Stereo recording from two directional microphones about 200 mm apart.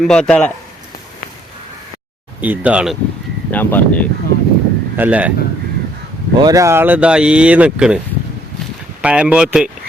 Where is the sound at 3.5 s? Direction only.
10° left (ahead or behind).